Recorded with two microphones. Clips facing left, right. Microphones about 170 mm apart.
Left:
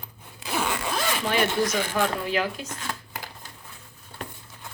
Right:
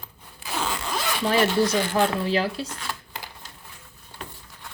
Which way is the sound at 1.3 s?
30° right (ahead or behind).